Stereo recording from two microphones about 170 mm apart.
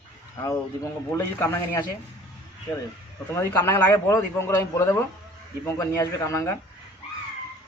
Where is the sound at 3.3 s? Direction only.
15° left (ahead or behind).